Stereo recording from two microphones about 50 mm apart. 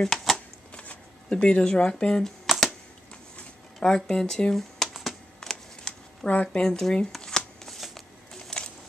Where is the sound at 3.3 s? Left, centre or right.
Centre.